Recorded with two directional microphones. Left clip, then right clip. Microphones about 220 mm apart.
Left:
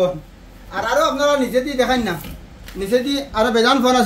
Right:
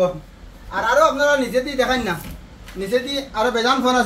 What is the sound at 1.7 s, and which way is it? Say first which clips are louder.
Speech: left 1 dB; 10° left (ahead or behind).